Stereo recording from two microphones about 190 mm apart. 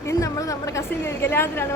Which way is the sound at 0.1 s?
15° left (ahead or behind).